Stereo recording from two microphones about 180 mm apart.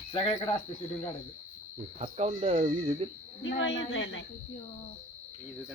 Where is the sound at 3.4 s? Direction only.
90° left.